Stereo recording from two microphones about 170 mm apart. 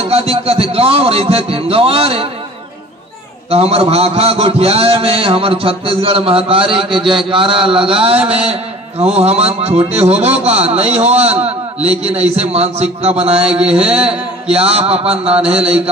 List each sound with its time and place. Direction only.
0.0 s a man's voice: 35° right (ahead or behind)
3.4 s a man's voice: 35° right (ahead or behind)
13.5 s a sound: 5° right (ahead or behind)
13.8 s a man's voice: 35° right (ahead or behind)